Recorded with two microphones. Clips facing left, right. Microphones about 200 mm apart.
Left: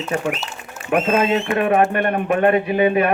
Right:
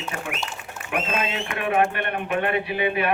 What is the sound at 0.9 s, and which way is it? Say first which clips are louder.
A man's voice: left 10 dB; 45° left (ahead or behind).